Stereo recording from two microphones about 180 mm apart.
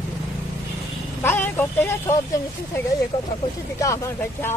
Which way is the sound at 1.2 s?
10° left (ahead or behind).